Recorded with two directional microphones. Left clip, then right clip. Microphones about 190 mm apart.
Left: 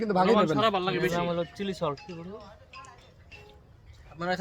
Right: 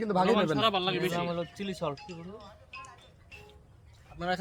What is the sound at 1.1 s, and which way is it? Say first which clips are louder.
Speech: left 3 dB; 25° left (ahead or behind).